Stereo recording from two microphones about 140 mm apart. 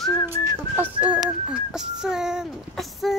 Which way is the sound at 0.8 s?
10° right (ahead or behind).